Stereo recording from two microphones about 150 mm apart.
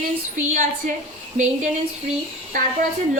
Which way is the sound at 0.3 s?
55° right (ahead or behind).